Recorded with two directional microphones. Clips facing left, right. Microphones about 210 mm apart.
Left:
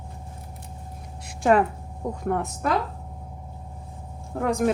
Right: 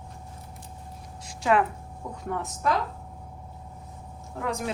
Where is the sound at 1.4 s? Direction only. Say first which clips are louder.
Left 4 dB; 45° left (ahead or behind).